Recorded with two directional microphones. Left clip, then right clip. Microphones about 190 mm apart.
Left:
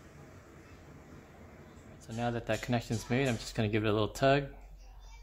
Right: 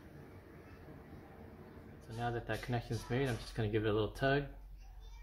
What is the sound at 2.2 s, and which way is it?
Speech, 45° left (ahead or behind).